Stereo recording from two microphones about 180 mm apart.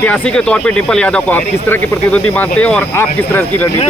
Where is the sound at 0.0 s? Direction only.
5° left (ahead or behind).